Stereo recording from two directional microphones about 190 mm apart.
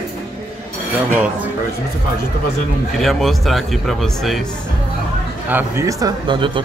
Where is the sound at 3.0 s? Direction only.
Centre (ahead or behind).